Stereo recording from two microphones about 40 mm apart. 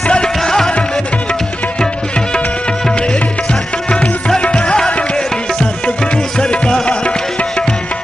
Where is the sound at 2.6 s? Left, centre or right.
Left.